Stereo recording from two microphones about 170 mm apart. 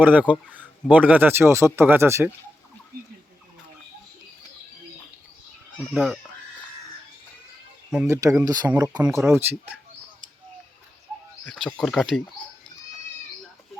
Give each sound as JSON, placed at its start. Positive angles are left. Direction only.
{"t": 0.0, "sound": "speech", "side_deg": -10}
{"t": 5.7, "sound": "speech", "side_deg": 0}
{"t": 8.0, "sound": "speech", "side_deg": -20}
{"t": 11.4, "sound": "speech", "side_deg": 0}